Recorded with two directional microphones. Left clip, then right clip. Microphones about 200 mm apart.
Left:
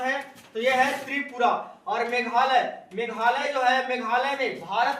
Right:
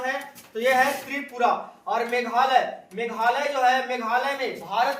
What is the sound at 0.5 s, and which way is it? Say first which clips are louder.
Speech: right 2 dB; 10° right (ahead or behind).